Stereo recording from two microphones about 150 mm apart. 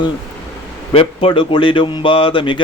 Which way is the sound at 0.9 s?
35° left (ahead or behind).